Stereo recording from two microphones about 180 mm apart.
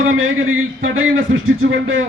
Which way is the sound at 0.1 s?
90° right.